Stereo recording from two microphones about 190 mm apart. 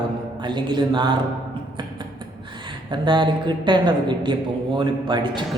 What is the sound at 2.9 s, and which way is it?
Speech, 25° right (ahead or behind).